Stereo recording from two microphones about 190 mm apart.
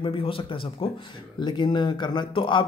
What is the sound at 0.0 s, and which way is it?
Speech, 30° left (ahead or behind).